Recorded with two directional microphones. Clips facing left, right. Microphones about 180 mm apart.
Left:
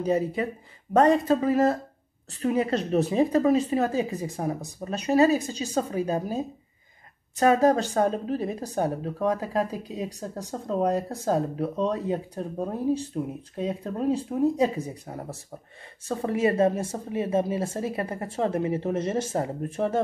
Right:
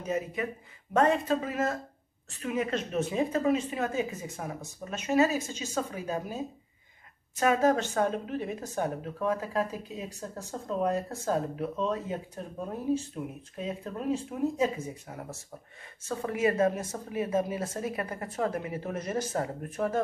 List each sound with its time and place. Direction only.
0.0 s speech: 30° left (ahead or behind)